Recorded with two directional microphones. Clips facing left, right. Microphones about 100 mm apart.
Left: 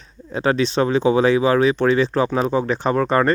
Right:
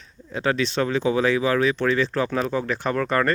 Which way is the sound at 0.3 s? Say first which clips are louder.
Left 4 dB; 35° left (ahead or behind).